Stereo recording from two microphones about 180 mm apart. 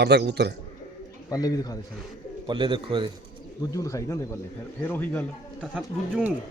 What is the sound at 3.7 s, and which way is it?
A man's voice, 20° left (ahead or behind).